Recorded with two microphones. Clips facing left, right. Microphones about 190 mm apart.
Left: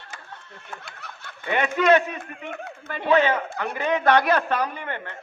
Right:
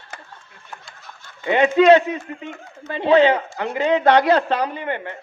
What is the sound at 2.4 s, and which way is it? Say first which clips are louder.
Speech: even; 60° left (ahead or behind).